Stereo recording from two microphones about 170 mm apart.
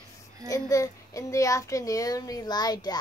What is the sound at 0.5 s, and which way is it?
A child's voice, 20° left (ahead or behind).